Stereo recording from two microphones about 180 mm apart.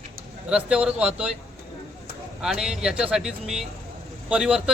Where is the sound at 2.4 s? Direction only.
Centre (ahead or behind).